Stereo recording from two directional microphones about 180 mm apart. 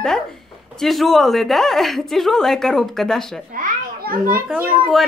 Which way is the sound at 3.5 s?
55° right (ahead or behind).